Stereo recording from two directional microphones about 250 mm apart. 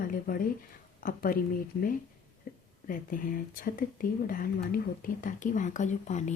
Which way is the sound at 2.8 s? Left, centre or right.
Left.